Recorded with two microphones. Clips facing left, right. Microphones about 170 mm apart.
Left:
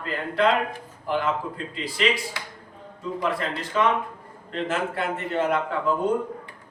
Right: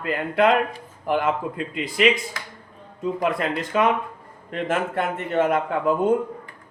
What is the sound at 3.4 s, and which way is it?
Speech, 50° right (ahead or behind).